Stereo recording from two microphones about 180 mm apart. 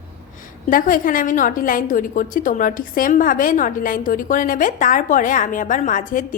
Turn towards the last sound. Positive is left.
turn(degrees=45)  # may be behind; listen again after turning